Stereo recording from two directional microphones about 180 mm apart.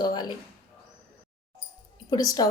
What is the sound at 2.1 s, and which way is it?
Speech, 20° left (ahead or behind).